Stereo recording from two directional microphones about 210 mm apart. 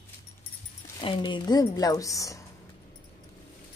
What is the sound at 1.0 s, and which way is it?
A woman's voice, 25° left (ahead or behind).